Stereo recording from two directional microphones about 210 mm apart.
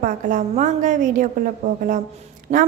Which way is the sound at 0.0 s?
35° right (ahead or behind).